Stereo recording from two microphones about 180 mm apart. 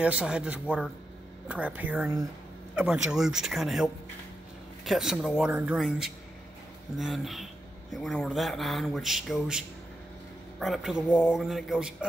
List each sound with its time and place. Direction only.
0.0 s speech: 5° right (ahead or behind)